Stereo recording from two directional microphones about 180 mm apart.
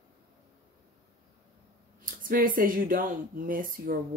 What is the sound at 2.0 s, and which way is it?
Speech, 50° right (ahead or behind).